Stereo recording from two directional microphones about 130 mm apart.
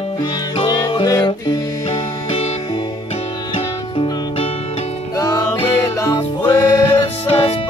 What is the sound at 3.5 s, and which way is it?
Music, 50° left (ahead or behind).